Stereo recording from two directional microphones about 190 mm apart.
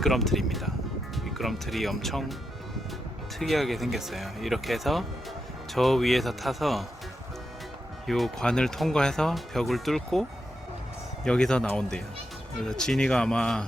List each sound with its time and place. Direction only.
0.0 s speech: centre (ahead or behind)
3.3 s speech: centre (ahead or behind)
8.0 s speech: centre (ahead or behind)